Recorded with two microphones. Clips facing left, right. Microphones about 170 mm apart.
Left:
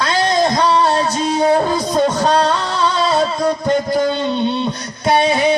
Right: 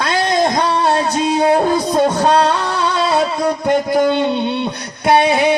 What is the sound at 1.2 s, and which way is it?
Music, 20° right (ahead or behind).